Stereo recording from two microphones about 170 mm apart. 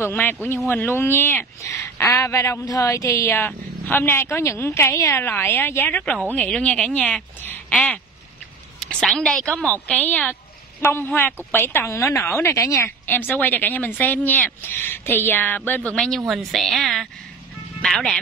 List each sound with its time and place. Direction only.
0.0 s a woman's voice: 10° left (ahead or behind)